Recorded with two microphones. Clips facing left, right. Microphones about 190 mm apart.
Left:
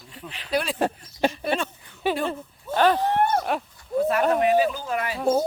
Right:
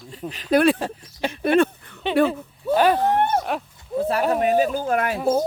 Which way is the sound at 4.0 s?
30° right (ahead or behind).